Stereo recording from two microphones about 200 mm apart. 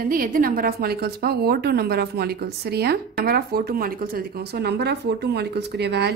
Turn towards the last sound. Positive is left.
turn(degrees=-55)  # may be behind; listen again after turning